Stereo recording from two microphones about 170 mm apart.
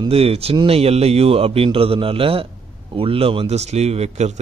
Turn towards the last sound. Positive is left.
turn(degrees=-40)  # may be behind; listen again after turning